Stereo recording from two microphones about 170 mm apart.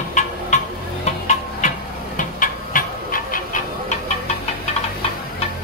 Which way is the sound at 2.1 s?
50° left (ahead or behind).